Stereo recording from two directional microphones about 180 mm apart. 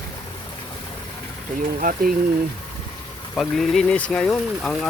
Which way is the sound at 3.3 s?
Centre (ahead or behind).